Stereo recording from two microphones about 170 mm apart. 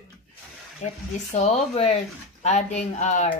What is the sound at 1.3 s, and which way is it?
Speech, 40° left (ahead or behind).